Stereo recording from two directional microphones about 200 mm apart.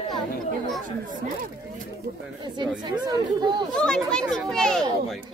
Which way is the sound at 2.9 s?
20° right (ahead or behind).